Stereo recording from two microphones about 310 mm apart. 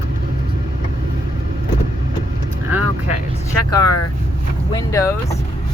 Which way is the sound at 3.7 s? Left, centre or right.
Centre.